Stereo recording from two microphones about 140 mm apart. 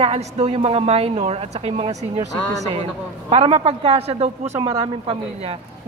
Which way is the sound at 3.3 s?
45° right (ahead or behind).